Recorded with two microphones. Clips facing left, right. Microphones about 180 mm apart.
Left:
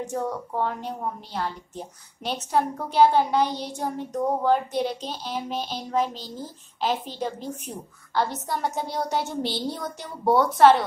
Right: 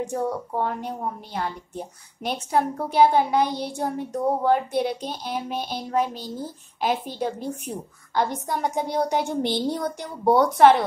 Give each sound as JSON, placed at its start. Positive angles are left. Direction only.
{"t": 0.0, "sound": "a woman's voice", "side_deg": -10}